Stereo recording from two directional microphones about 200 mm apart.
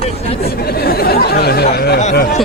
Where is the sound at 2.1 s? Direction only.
45° left (ahead or behind).